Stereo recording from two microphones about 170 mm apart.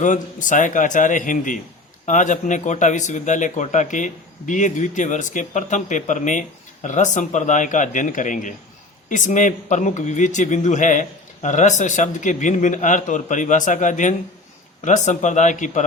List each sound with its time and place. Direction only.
0.0 s speech: 50° left (ahead or behind)